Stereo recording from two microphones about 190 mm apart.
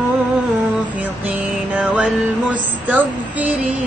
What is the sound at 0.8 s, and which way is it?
Music, 10° right (ahead or behind).